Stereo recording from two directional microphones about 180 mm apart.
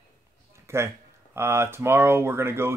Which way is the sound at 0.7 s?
15° right (ahead or behind).